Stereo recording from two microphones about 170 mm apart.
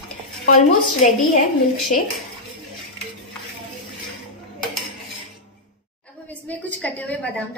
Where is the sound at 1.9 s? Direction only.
50° left (ahead or behind).